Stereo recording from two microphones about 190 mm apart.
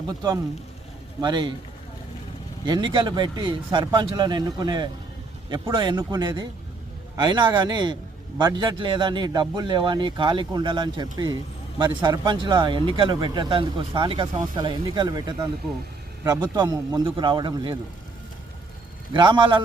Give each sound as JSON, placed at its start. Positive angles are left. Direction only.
{"t": 0.1, "sound": "speech", "side_deg": -20}
{"t": 2.6, "sound": "speech", "side_deg": -25}
{"t": 19.1, "sound": "speech", "side_deg": -25}